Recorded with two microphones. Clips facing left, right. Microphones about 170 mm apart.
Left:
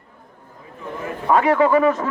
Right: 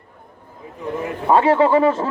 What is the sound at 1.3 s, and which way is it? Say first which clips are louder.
Speech: right 1 dB; 30° right (ahead or behind).